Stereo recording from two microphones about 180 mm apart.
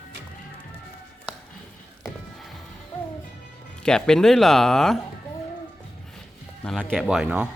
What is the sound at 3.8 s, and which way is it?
Speech, 5° left (ahead or behind).